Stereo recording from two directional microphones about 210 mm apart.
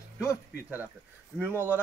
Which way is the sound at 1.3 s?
10° right (ahead or behind).